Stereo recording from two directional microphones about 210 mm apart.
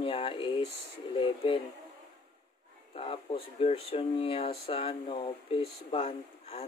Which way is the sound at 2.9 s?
25° left (ahead or behind).